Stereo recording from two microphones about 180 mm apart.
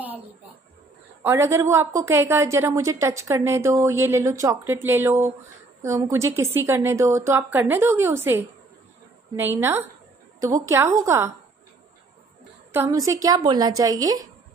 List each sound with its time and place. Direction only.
1.2 s a woman's voice: 15° right (ahead or behind)
12.7 s a woman's voice: 15° right (ahead or behind)